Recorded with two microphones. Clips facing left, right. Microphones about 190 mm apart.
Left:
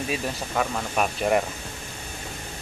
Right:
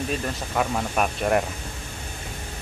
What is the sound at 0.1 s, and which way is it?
Speech, 5° left (ahead or behind).